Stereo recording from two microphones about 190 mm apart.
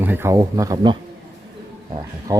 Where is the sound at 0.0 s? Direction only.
10° right (ahead or behind).